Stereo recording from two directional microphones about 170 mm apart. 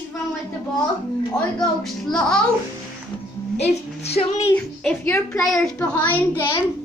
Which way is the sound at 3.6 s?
40° left (ahead or behind).